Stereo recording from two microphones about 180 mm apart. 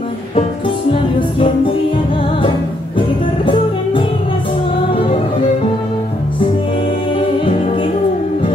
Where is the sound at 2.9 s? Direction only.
30° left (ahead or behind).